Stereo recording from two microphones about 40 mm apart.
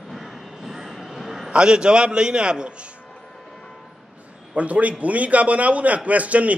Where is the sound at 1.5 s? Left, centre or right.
Right.